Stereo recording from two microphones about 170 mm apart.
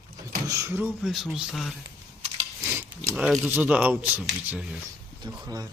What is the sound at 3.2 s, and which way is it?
Speech, 10° right (ahead or behind).